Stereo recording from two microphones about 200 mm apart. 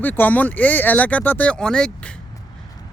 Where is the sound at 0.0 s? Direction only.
10° left (ahead or behind).